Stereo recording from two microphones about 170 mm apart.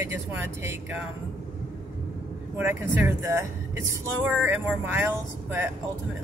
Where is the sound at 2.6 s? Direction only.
15° right (ahead or behind).